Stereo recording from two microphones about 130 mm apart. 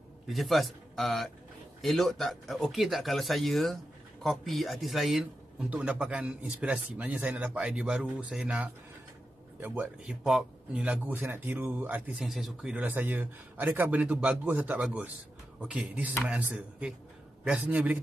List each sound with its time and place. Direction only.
0.3 s speech: centre (ahead or behind)
12.3 s speech: centre (ahead or behind)